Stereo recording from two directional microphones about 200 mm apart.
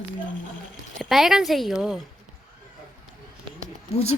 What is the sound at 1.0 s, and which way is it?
Speech, centre (ahead or behind).